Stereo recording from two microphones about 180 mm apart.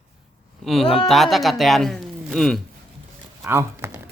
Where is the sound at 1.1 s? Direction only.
Centre (ahead or behind).